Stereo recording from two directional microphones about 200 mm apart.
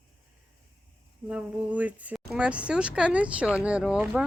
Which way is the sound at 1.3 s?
5° right (ahead or behind).